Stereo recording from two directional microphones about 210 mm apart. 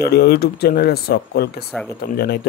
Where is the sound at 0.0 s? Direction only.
50° left (ahead or behind).